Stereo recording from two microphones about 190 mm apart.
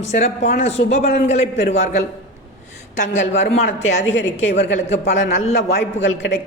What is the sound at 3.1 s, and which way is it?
Speech, 35° left (ahead or behind).